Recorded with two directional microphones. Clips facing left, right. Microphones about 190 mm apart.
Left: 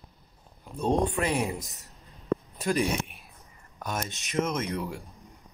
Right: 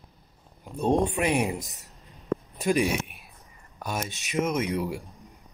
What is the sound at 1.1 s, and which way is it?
Speech, 15° right (ahead or behind).